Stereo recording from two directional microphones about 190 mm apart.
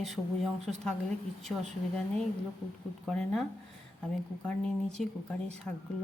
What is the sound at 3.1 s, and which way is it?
A woman's voice, 5° left (ahead or behind).